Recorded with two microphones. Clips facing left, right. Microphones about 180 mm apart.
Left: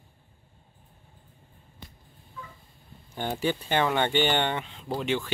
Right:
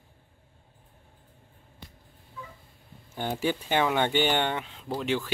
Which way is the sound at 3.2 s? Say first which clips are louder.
Even; 5° right (ahead or behind).